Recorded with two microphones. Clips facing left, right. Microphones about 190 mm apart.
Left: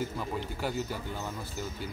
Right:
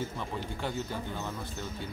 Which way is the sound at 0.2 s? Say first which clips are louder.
Left 2 dB; 5° left (ahead or behind).